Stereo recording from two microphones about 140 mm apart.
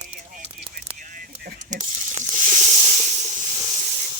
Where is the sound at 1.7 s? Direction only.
60° right (ahead or behind).